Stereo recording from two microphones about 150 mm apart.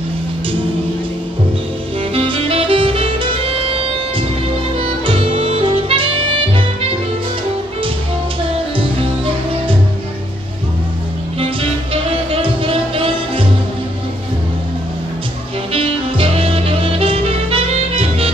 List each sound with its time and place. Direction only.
2.1 s saxophone: 35° right (ahead or behind)
4.7 s music: 40° right (ahead or behind)
11.9 s music: 35° right (ahead or behind)
15.7 s music: 40° right (ahead or behind)